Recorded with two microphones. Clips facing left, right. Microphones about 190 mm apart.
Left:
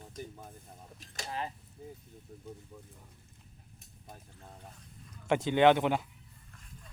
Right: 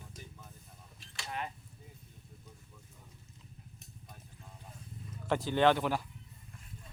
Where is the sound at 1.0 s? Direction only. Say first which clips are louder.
Left 2 dB; 35° left (ahead or behind).